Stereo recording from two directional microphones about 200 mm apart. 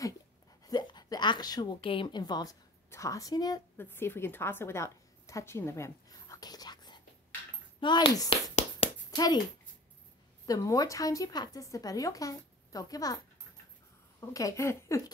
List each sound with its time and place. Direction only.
0.7 s a woman's voice: 20° left (ahead or behind)
8.5 s a sound: 30° left (ahead or behind)
10.4 s a woman's voice: 15° left (ahead or behind)
14.3 s a woman's voice: 15° left (ahead or behind)